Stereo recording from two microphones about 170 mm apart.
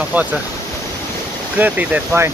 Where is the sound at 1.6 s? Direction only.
10° right (ahead or behind).